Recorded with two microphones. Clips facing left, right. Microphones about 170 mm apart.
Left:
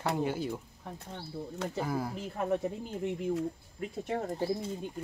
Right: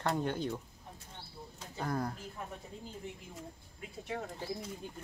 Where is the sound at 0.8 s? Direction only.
70° left (ahead or behind).